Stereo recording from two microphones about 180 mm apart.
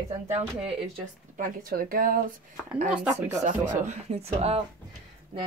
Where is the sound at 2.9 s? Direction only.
10° right (ahead or behind).